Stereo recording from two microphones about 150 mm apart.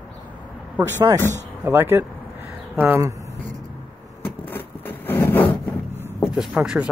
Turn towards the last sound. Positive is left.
turn(degrees=-5)  # may be behind; listen again after turning